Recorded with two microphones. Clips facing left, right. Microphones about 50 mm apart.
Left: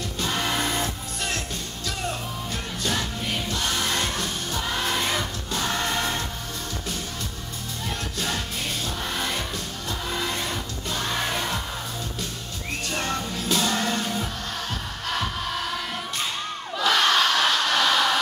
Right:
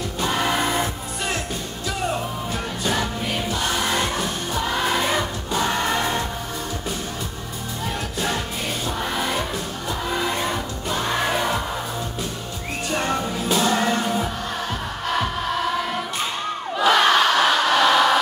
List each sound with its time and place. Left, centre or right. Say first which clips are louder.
0.2 s music: right 4 dB; centre
2.8 s music: right 3 dB; centre
9.0 s music: right 5 dB; centre
12.9 s music: right 6 dB; centre
16.7 s crowd: right 4 dB; centre